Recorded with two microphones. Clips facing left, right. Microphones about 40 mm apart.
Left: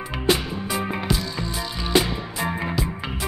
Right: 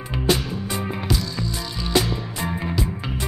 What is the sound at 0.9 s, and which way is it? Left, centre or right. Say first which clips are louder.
Music: even; centre.